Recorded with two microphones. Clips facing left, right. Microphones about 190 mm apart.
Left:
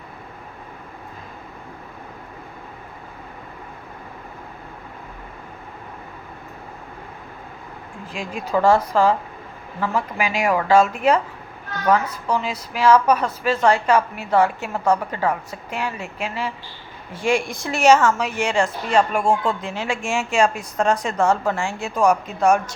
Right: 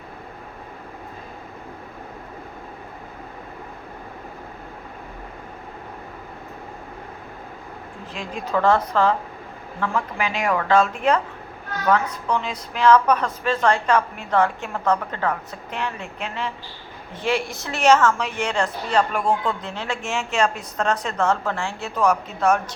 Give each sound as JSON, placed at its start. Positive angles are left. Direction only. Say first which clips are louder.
{"t": 8.1, "sound": "a woman's voice", "louder": "left 2 dB", "side_deg": 10}
{"t": 19.2, "sound": "speech", "louder": "left 2 dB", "side_deg": 25}
{"t": 19.5, "sound": "a woman's voice", "louder": "left 3 dB", "side_deg": 10}